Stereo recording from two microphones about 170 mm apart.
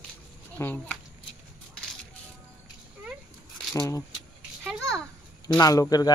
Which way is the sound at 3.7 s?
20° left (ahead or behind).